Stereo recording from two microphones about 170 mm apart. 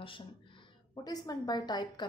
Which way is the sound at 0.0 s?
30° left (ahead or behind).